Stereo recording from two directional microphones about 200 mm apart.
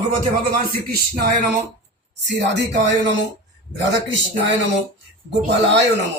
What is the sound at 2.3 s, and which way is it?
Speech, 60° right (ahead or behind).